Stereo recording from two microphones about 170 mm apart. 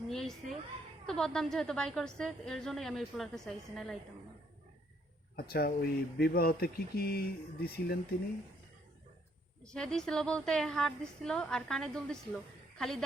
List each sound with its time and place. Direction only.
0.1 s a sound: centre (ahead or behind)
1.0 s a woman's voice: 5° left (ahead or behind)
5.4 s speech: 65° left (ahead or behind)
9.6 s a woman's voice: 5° left (ahead or behind)